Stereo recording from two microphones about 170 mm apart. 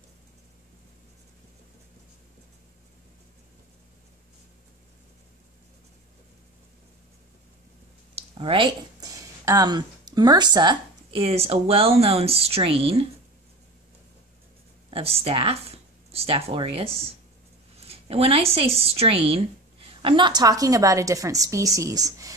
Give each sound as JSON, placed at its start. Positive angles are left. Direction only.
{"t": 8.1, "sound": "speech", "side_deg": -35}
{"t": 14.9, "sound": "a woman's voice", "side_deg": -35}